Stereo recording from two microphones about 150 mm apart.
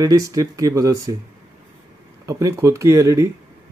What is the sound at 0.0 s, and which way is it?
Speech, 25° right (ahead or behind).